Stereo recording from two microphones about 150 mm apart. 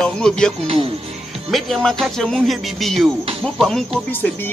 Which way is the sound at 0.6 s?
40° right (ahead or behind).